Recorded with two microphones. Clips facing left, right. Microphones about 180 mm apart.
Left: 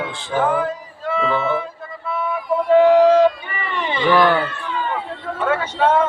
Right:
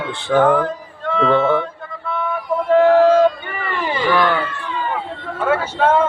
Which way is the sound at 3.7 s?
5° right (ahead or behind).